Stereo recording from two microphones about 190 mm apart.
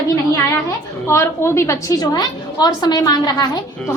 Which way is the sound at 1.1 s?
15° left (ahead or behind).